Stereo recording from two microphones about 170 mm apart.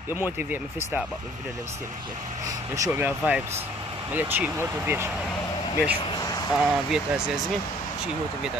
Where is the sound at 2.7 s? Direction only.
15° right (ahead or behind).